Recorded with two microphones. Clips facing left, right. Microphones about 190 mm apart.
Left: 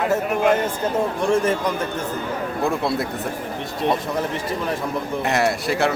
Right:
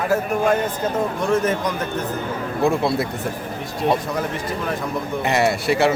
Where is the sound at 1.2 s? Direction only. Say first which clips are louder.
Even; 30° left (ahead or behind).